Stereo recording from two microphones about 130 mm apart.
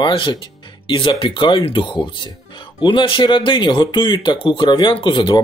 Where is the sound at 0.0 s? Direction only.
35° left (ahead or behind).